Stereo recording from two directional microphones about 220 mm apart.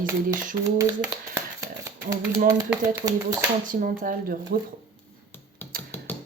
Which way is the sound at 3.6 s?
40° right (ahead or behind).